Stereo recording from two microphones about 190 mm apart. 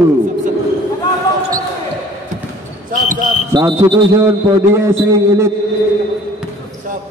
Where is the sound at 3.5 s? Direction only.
20° right (ahead or behind).